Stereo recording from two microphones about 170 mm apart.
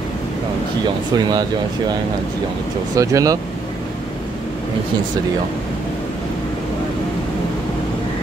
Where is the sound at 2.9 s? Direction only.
20° right (ahead or behind).